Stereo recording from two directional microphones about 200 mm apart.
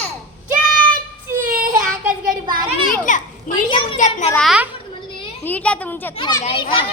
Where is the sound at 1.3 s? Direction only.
10° right (ahead or behind).